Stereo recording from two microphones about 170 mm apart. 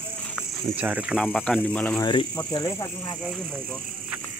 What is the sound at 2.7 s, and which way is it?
Speech, 15° left (ahead or behind).